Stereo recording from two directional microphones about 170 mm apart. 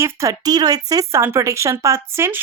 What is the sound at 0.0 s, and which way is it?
A woman's voice, 20° right (ahead or behind).